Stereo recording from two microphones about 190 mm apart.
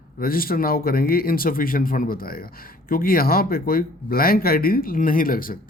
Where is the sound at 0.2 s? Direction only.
50° left (ahead or behind).